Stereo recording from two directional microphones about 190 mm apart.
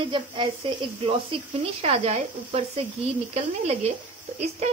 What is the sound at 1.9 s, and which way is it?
Speech, 35° right (ahead or behind).